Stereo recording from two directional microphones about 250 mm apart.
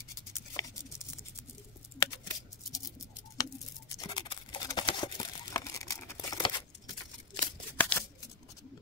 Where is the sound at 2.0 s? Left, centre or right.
Centre.